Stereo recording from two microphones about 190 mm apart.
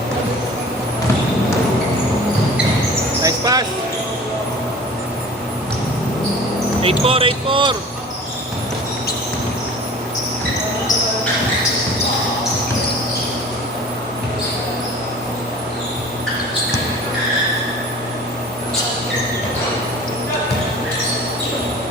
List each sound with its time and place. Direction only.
3.2 s basketball bounce: 20° right (ahead or behind)
6.8 s speech: 30° right (ahead or behind)